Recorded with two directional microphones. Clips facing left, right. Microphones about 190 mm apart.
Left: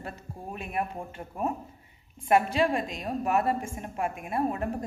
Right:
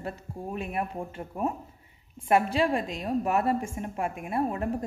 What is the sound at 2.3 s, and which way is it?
A woman's voice, 30° right (ahead or behind).